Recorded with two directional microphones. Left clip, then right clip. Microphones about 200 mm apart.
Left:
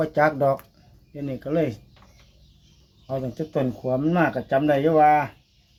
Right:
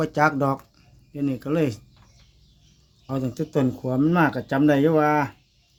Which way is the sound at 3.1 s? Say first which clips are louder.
Even; 45° right (ahead or behind).